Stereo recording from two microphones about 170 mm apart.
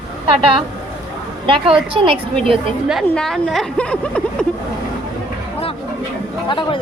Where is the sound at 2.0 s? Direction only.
30° right (ahead or behind).